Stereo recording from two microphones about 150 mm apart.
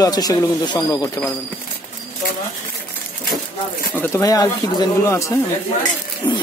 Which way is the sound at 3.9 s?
10° left (ahead or behind).